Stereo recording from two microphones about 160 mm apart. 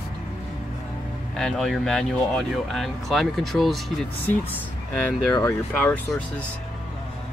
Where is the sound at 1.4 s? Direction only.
Centre (ahead or behind).